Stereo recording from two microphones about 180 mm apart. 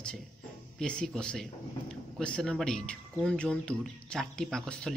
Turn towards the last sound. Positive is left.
turn(degrees=5)  # may be behind; listen again after turning